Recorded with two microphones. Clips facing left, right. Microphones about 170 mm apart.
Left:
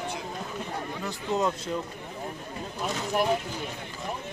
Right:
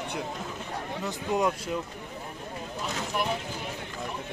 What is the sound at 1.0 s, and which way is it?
Speech, 15° right (ahead or behind).